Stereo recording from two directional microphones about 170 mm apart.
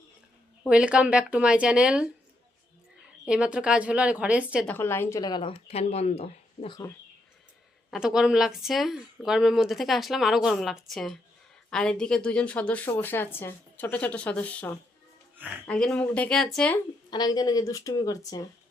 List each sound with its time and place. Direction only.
0.7 s speech: 5° right (ahead or behind)
3.2 s a woman's voice: 5° right (ahead or behind)
4.6 s speech: 10° left (ahead or behind); by 6.7 s 40° left (ahead or behind)
6.7 s speech: 20° left (ahead or behind)
7.9 s speech: 5° right (ahead or behind)
17.1 s speech: 25° left (ahead or behind)